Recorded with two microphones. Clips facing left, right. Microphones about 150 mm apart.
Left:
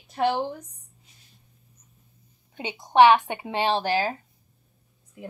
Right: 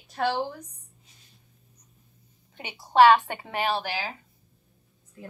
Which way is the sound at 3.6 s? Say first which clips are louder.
Left 5 dB; 30° left (ahead or behind).